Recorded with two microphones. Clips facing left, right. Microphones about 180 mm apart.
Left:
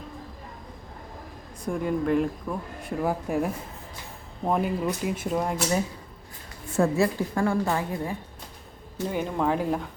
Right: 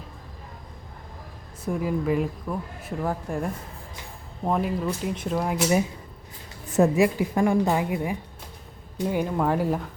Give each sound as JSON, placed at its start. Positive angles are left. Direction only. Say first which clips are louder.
{"t": 1.6, "sound": "speech", "louder": "even", "side_deg": -5}
{"t": 3.0, "sound": "speech", "louder": "left 2 dB", "side_deg": 10}
{"t": 6.7, "sound": "a woman's voice", "louder": "right 3 dB", "side_deg": -15}